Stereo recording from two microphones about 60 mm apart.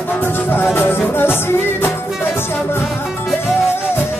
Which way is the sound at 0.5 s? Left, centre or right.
Left.